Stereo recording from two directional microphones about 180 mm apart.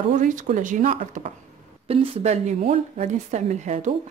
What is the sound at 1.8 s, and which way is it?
Speech, 30° right (ahead or behind).